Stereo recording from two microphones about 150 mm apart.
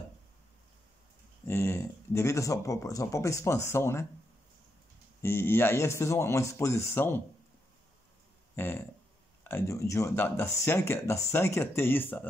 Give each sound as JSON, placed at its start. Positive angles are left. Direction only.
{"t": 1.5, "sound": "speech", "side_deg": 15}
{"t": 5.2, "sound": "speech", "side_deg": 15}
{"t": 8.5, "sound": "speech", "side_deg": 15}